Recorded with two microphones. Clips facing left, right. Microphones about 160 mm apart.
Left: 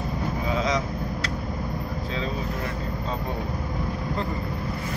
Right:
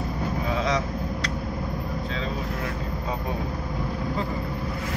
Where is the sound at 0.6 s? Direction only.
Centre (ahead or behind).